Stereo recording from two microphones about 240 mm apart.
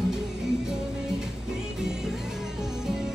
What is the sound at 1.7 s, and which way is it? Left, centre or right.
Music, centre.